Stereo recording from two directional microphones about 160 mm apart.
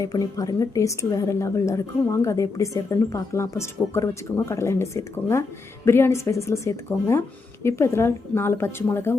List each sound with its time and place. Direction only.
0.0 s a woman's voice: 20° left (ahead or behind)